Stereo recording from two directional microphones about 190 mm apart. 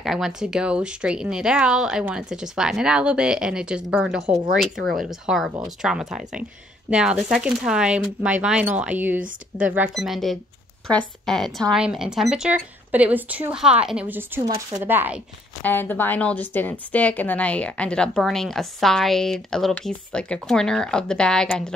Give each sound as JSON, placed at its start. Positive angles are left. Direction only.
{"t": 0.0, "sound": "a woman's voice", "side_deg": 0}
{"t": 15.6, "sound": "a woman's voice", "side_deg": 10}